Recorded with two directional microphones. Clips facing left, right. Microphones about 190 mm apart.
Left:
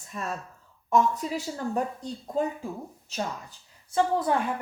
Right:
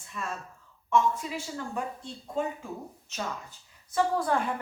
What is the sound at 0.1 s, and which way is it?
Speech, 40° left (ahead or behind).